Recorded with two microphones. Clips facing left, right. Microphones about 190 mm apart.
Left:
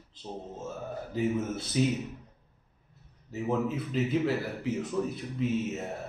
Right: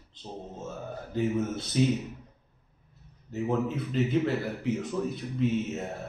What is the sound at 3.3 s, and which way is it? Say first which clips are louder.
Speech: right 1 dB; 5° left (ahead or behind).